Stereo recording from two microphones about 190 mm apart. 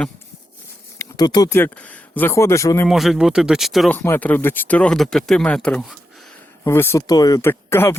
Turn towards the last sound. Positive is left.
turn(degrees=10)  # may be behind; listen again after turning